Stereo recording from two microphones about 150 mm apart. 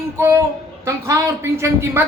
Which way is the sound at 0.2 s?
20° right (ahead or behind).